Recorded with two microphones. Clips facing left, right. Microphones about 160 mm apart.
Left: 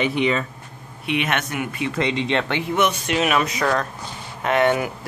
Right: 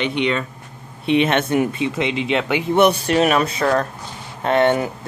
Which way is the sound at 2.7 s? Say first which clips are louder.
Right 6 dB; 35° right (ahead or behind).